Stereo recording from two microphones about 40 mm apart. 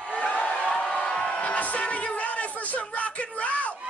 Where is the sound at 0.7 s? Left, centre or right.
Centre.